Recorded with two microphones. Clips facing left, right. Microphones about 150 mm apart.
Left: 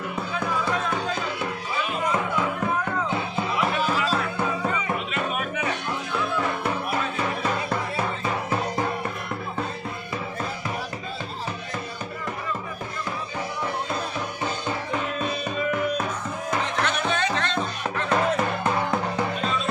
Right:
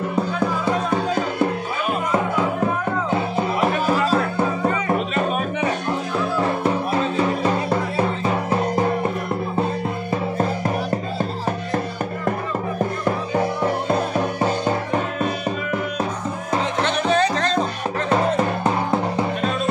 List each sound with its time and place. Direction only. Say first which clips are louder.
0.7 s music: right 5 dB; 35° right (ahead or behind)
3.3 s music: right 3 dB; 40° right (ahead or behind)
13.8 s music: right 9 dB; 45° right (ahead or behind)
16.8 s music: right 6 dB; 35° right (ahead or behind)